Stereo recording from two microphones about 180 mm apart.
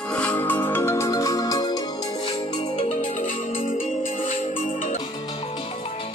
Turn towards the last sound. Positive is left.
turn(degrees=50)  # may be behind; listen again after turning